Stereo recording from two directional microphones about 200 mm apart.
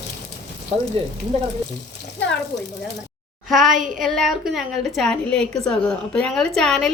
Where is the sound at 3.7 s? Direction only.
40° right (ahead or behind).